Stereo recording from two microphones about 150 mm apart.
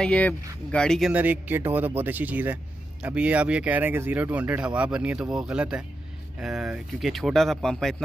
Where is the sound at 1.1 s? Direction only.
10° right (ahead or behind).